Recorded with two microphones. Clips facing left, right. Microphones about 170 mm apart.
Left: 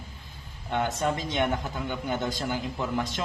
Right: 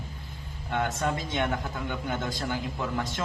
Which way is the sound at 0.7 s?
15° left (ahead or behind).